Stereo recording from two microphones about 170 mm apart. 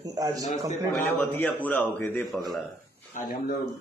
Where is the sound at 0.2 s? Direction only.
20° right (ahead or behind).